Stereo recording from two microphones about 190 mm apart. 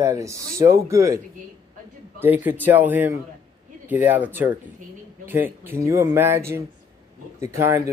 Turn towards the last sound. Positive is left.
turn(degrees=-15)  # may be behind; listen again after turning